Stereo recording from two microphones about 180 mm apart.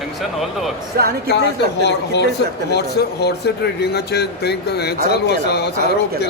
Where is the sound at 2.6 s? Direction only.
65° left (ahead or behind).